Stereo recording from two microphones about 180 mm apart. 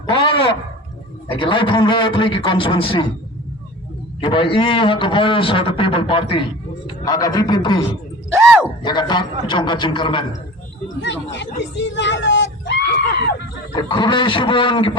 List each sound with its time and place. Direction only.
0.1 s a sound: 30° left (ahead or behind)
1.3 s a man's voice: 25° left (ahead or behind)
4.2 s a man's voice: 30° left (ahead or behind)
11.0 s speech: 80° left
13.7 s a man's voice: 25° left (ahead or behind)